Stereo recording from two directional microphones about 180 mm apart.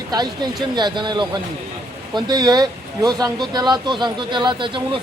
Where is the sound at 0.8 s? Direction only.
25° right (ahead or behind).